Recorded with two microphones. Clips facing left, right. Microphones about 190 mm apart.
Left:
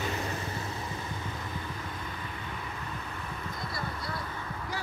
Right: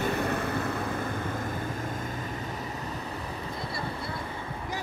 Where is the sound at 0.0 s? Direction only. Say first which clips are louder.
Right 6 dB; 55° right (ahead or behind).